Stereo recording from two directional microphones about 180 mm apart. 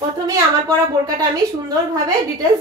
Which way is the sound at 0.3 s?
20° right (ahead or behind).